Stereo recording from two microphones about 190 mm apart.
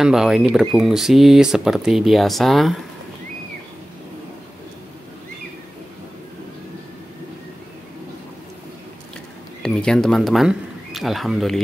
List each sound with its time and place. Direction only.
0.0 s speech: 5° right (ahead or behind)
9.6 s speech: 5° left (ahead or behind)